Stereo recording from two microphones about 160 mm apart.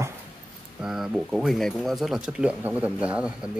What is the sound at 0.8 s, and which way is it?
Speech, 5° right (ahead or behind).